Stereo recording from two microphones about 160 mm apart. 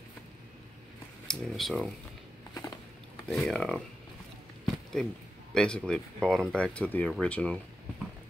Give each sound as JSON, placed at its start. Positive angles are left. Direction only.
{"t": 1.2, "sound": "speech", "side_deg": 0}
{"t": 2.5, "sound": "a sound", "side_deg": 20}
{"t": 3.3, "sound": "speech", "side_deg": 5}
{"t": 5.5, "sound": "speech", "side_deg": 5}